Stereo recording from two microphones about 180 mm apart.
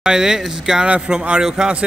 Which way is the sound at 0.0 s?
5° right (ahead or behind).